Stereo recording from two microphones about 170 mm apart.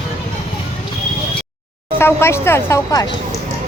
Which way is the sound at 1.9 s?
15° left (ahead or behind).